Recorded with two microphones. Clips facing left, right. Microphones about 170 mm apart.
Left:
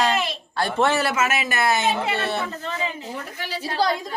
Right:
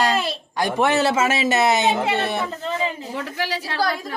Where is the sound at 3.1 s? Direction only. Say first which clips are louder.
Right 5 dB; 90° right.